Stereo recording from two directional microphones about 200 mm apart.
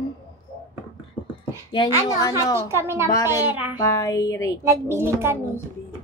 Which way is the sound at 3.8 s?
15° left (ahead or behind).